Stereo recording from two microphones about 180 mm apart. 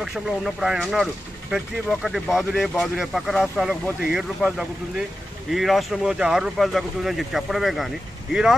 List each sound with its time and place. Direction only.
0.0 s speech: 5° right (ahead or behind)